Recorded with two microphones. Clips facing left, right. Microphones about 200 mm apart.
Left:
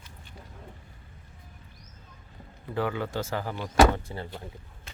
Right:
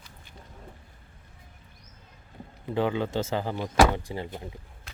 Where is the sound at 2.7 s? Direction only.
20° right (ahead or behind).